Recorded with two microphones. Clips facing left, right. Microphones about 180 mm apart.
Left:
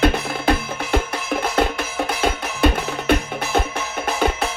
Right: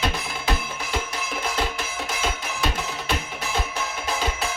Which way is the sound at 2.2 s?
60° left (ahead or behind).